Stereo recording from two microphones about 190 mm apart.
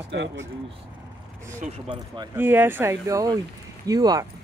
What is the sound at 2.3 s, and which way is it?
Speech, 10° right (ahead or behind).